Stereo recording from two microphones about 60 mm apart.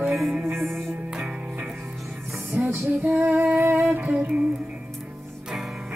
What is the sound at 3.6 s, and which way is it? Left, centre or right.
Music, right.